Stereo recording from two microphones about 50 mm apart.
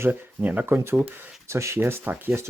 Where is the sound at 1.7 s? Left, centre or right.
Right.